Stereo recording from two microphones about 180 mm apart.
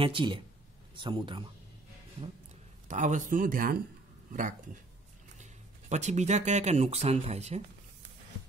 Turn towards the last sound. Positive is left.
turn(degrees=-35)  # may be behind; listen again after turning